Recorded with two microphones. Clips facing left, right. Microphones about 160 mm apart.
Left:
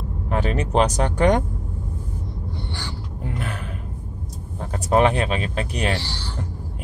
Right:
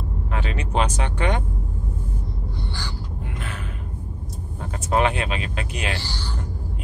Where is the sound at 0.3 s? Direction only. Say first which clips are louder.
Left 6 dB; 45° left (ahead or behind).